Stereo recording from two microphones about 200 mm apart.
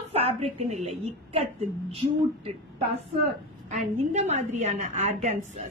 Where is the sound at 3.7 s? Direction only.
35° right (ahead or behind).